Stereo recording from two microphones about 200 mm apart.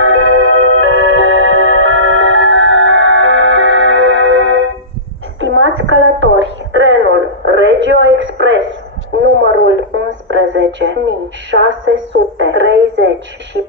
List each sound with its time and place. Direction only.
0.0 s music: 90° right; by 4.6 s 70° right (ahead or behind)
5.4 s a sound: 70° right (ahead or behind)
9.4 s radio: 70° right (ahead or behind)